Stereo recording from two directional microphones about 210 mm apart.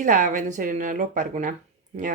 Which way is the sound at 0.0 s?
40° right (ahead or behind).